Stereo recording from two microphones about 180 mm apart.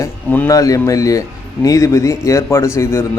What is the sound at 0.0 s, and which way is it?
Speech, 15° left (ahead or behind).